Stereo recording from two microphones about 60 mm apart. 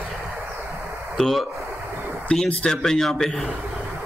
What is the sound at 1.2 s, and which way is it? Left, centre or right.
Speech, centre.